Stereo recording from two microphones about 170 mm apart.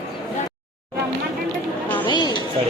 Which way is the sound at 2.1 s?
25° left (ahead or behind).